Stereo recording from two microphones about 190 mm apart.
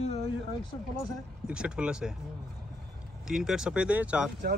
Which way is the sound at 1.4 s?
5° right (ahead or behind).